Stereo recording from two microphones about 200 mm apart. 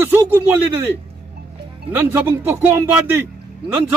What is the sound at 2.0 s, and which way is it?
A man's voice, 10° right (ahead or behind).